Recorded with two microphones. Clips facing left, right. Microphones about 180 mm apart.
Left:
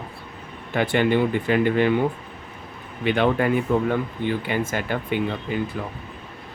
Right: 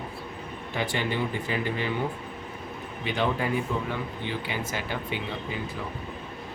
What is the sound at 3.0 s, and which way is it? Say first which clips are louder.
Speech: left 7 dB; 60° left (ahead or behind).